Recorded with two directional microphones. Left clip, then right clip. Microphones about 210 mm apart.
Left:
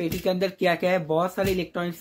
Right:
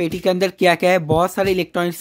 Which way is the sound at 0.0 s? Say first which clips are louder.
Right 7 dB; 55° right (ahead or behind).